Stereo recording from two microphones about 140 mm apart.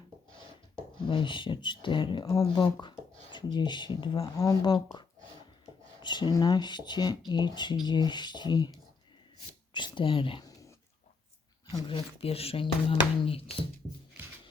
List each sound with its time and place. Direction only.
0.9 s speech: 35° left (ahead or behind)
9.7 s speech: 35° left (ahead or behind)
11.9 s speech: 40° left (ahead or behind)